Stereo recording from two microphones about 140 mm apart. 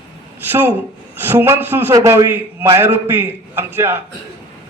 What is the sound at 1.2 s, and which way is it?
A man's voice, 15° right (ahead or behind).